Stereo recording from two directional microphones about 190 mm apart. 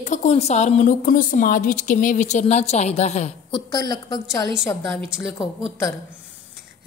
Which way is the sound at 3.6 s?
20° left (ahead or behind).